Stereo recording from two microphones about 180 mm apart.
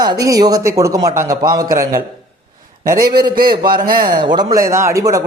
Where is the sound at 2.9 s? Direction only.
55° right (ahead or behind).